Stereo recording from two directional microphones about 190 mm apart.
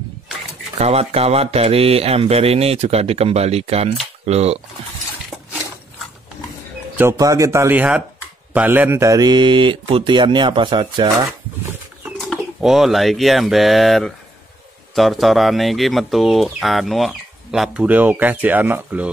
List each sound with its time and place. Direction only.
0.7 s speech: 35° right (ahead or behind)
7.0 s speech: 15° right (ahead or behind)
12.2 s speech: centre (ahead or behind)